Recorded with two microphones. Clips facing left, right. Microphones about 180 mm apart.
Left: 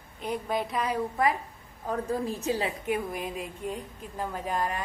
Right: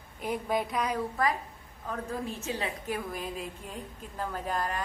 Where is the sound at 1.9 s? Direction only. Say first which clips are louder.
Left 5 dB; 35° left (ahead or behind).